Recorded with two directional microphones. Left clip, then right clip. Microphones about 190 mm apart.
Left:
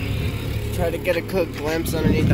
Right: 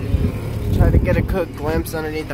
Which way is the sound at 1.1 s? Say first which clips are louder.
Even; centre (ahead or behind).